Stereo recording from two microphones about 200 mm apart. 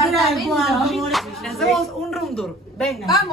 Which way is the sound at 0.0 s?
Centre (ahead or behind).